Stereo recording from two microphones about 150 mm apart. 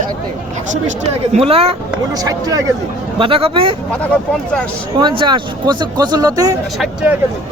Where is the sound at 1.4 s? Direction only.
40° right (ahead or behind).